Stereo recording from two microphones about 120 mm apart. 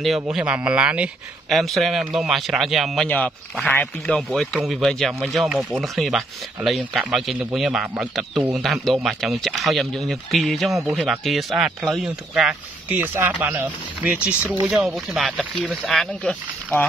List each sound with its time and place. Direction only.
0.0 s speech: 5° right (ahead or behind)
3.1 s speech: 10° left (ahead or behind); by 12.5 s 5° right (ahead or behind)
13.0 s speech: 15° right (ahead or behind)
15.1 s speech: centre (ahead or behind)